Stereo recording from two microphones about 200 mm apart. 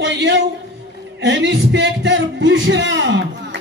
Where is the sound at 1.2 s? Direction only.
65° right (ahead or behind).